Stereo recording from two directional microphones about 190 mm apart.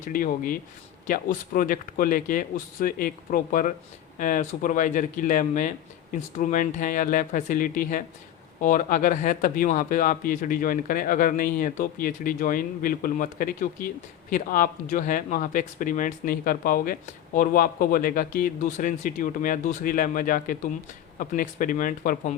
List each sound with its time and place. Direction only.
0.0 s speech: 45° left (ahead or behind)